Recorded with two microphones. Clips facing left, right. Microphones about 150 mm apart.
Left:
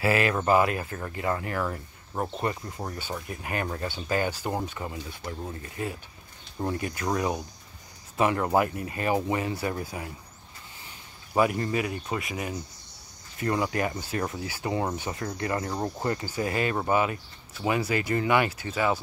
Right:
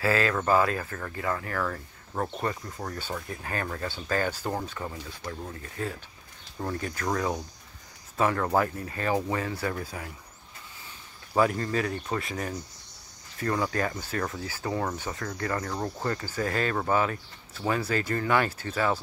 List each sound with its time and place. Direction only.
0.0 s speech: 20° left (ahead or behind)
11.3 s speech: 15° left (ahead or behind)